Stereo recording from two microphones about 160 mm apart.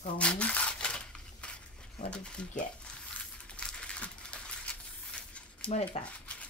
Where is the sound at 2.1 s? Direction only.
5° left (ahead or behind).